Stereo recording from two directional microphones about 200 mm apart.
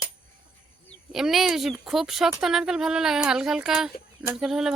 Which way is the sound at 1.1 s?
Centre (ahead or behind).